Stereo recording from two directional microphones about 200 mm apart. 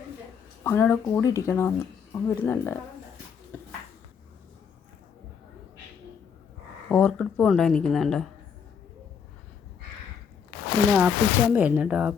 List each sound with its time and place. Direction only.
0.6 s speech: 10° left (ahead or behind)
3.5 s a sound: 10° left (ahead or behind)
6.8 s speech: 5° left (ahead or behind)
10.9 s speech: 10° right (ahead or behind)